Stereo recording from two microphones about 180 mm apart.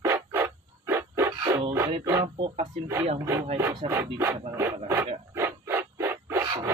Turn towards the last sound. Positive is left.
turn(degrees=-20)  # may be behind; listen again after turning